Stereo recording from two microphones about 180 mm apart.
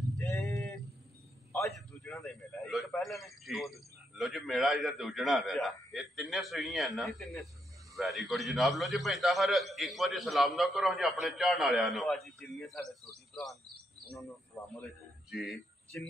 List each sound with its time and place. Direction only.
0.2 s a sound: 15° left (ahead or behind)
2.0 s a man's voice: centre (ahead or behind)
14.6 s speech: 15° left (ahead or behind)
15.3 s a man's voice: centre (ahead or behind)
15.9 s speech: 15° left (ahead or behind)